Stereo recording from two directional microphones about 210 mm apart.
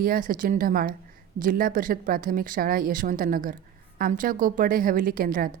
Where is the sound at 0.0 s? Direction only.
45° right (ahead or behind).